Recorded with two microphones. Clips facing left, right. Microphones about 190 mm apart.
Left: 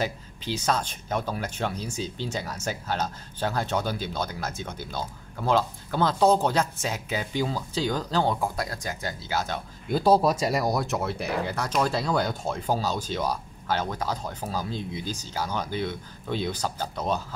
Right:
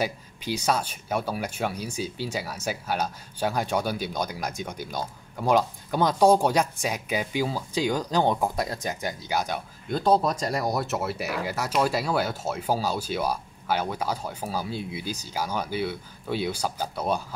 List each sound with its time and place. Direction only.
0.0 s speech: 10° right (ahead or behind)
9.8 s speech: 5° left (ahead or behind); by 17.2 s 10° right (ahead or behind)